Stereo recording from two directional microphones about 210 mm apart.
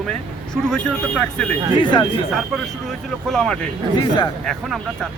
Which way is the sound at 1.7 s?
20° left (ahead or behind).